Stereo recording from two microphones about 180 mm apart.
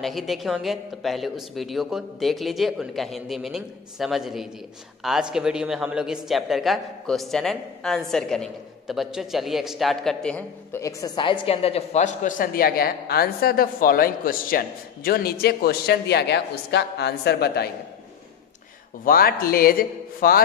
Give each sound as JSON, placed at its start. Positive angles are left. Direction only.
{"t": 0.0, "sound": "a man's voice", "side_deg": 0}
{"t": 19.0, "sound": "a man's voice", "side_deg": 55}